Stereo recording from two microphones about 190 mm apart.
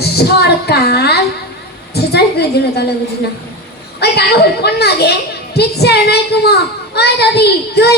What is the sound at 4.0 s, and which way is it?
A woman's voice, 60° left (ahead or behind).